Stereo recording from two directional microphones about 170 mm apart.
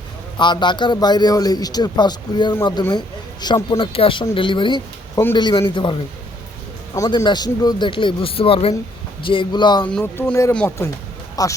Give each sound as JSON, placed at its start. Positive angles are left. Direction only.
{"t": 0.3, "sound": "a man's voice", "side_deg": 25}
{"t": 6.9, "sound": "a man's voice", "side_deg": 20}
{"t": 9.8, "sound": "speech", "side_deg": 10}
{"t": 11.4, "sound": "a man's voice", "side_deg": 20}